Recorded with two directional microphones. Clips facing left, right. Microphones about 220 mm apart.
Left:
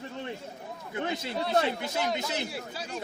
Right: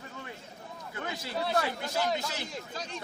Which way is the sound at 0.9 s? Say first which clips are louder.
Left 4 dB; 25° left (ahead or behind).